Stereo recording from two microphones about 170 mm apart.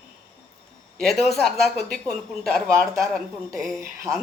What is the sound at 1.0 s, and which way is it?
A woman's voice, centre (ahead or behind).